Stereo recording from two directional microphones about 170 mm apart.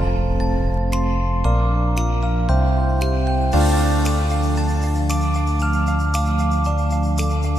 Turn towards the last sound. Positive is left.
turn(degrees=0)  # may be behind; listen again after turning